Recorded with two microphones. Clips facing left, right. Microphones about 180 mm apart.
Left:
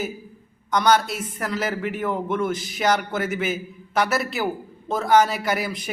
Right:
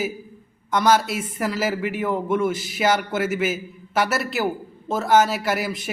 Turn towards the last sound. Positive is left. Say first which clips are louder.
# right 1 dB
turn(degrees=0)  # may be behind; listen again after turning